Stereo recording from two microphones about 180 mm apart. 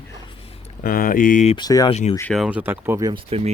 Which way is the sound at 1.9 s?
35° left (ahead or behind).